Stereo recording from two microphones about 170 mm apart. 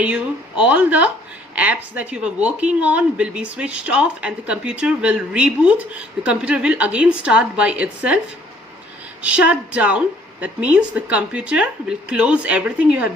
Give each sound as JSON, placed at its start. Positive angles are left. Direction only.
{"t": 0.0, "sound": "speech", "side_deg": -5}
{"t": 9.2, "sound": "speech", "side_deg": -10}